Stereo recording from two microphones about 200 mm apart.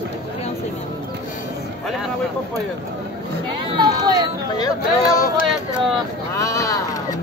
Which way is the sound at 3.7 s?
20° right (ahead or behind).